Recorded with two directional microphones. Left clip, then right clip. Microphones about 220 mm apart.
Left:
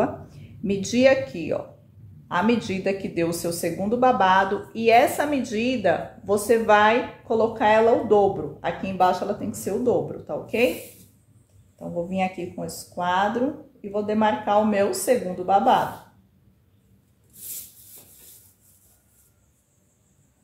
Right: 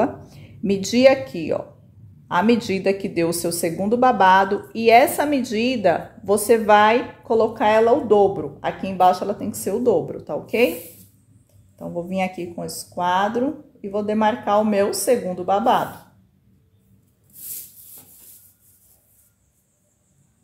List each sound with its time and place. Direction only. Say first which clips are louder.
0.0 s speech: right 3 dB; 40° right (ahead or behind)
11.8 s speech: right 1 dB; 40° right (ahead or behind)